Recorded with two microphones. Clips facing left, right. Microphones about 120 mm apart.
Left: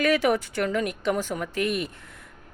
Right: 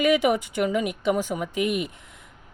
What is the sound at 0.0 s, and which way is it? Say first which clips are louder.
A woman's voice: right 2 dB; 15° right (ahead or behind).